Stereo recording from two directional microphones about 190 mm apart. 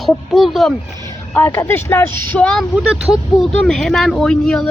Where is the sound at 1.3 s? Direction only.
10° left (ahead or behind).